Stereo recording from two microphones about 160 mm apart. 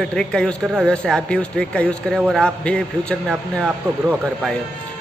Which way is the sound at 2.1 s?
5° right (ahead or behind).